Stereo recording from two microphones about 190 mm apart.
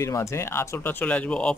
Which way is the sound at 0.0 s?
15° left (ahead or behind).